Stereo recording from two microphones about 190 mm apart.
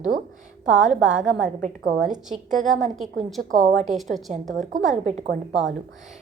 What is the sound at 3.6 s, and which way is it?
Speech, 40° right (ahead or behind).